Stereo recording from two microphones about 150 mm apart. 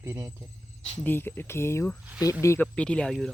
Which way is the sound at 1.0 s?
15° left (ahead or behind).